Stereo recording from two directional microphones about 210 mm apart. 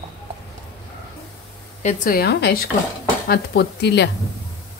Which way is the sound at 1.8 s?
40° left (ahead or behind).